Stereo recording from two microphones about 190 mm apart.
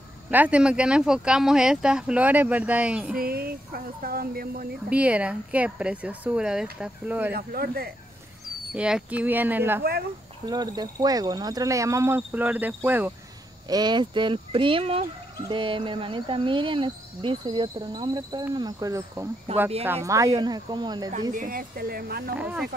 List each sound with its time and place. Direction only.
0.3 s speech: 10° right (ahead or behind)
3.2 s a sound: 50° right (ahead or behind)
4.8 s speech: 5° right (ahead or behind)
7.3 s a sound: 55° right (ahead or behind)
8.7 s speech: 5° right (ahead or behind)
13.7 s speech: 20° right (ahead or behind)
19.5 s speech: 35° right (ahead or behind)
19.9 s speech: 15° right (ahead or behind)
21.3 s a sound: 45° right (ahead or behind)
22.3 s speech: 5° right (ahead or behind)